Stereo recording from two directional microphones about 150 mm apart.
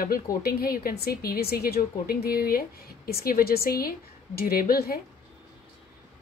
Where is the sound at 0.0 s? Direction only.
75° left (ahead or behind).